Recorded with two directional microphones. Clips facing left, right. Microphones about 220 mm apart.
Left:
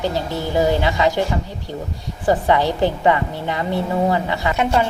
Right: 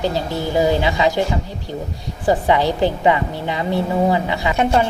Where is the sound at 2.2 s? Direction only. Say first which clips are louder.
Right 1 dB; 10° right (ahead or behind).